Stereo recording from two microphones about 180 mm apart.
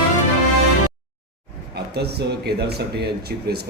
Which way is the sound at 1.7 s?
65° right (ahead or behind).